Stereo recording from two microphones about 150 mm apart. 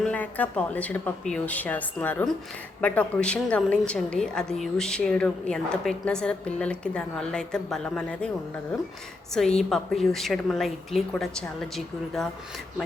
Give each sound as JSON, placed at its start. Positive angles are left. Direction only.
{"t": 0.0, "sound": "a woman's voice", "side_deg": 10}
{"t": 9.3, "sound": "a woman's voice", "side_deg": 5}